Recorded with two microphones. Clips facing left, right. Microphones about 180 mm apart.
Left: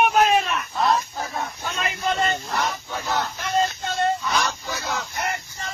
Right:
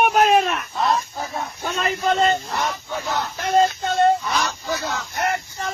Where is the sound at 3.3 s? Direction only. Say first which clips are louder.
Right 5 dB; 55° right (ahead or behind).